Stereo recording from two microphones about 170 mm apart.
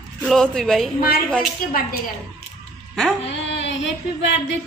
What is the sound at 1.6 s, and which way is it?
Speech, 55° left (ahead or behind).